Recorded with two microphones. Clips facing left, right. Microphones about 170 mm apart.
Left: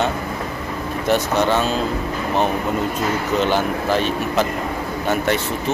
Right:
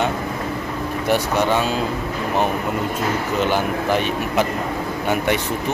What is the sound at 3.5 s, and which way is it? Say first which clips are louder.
Speech: even; 15° right (ahead or behind).